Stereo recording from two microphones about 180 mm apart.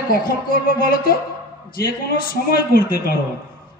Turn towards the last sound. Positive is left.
turn(degrees=55)  # may be behind; listen again after turning